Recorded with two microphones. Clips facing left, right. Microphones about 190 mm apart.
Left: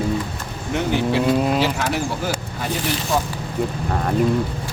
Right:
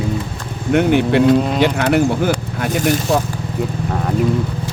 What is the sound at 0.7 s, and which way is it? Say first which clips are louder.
Speech: right 7 dB; 65° right (ahead or behind).